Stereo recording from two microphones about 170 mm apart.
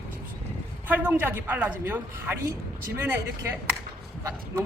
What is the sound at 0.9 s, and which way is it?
A woman's voice, 10° right (ahead or behind).